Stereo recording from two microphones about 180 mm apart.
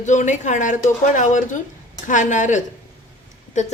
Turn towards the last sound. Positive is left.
turn(degrees=40)  # may be behind; listen again after turning